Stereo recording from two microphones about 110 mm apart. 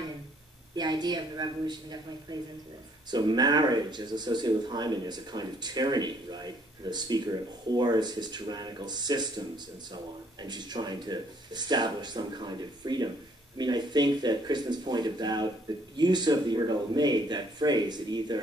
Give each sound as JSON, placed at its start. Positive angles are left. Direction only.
{"t": 0.7, "sound": "speech", "side_deg": -40}
{"t": 10.4, "sound": "speech", "side_deg": -40}